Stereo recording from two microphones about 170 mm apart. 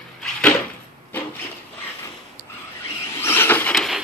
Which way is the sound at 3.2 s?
15° left (ahead or behind).